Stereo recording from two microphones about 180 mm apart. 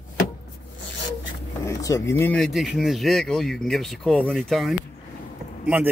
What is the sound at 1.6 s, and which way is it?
Speech, 15° left (ahead or behind).